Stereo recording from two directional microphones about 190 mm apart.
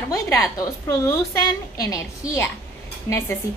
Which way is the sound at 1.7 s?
20° left (ahead or behind).